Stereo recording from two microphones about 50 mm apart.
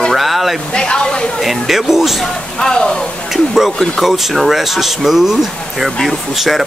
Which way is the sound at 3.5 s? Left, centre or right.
Centre.